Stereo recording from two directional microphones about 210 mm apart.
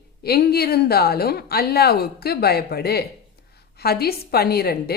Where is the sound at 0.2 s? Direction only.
50° left (ahead or behind).